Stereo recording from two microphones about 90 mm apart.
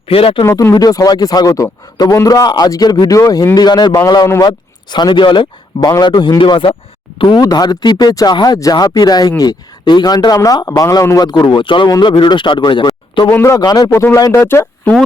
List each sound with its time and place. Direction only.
0.1 s speech: 90° left
0.4 s speech: 35° left (ahead or behind)
0.7 s a man's voice: 45° left (ahead or behind)
4.4 s speech: 55° left (ahead or behind)
7.4 s a man's voice: 45° left (ahead or behind)
11.3 s speech: 60° left (ahead or behind)
13.2 s speech: 30° left (ahead or behind)
13.7 s a man's voice: 45° left (ahead or behind)
13.9 s speech: 30° left (ahead or behind)
14.4 s speech: 25° left (ahead or behind)